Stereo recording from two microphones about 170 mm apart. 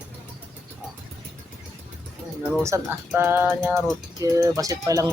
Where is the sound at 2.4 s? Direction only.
Centre (ahead or behind).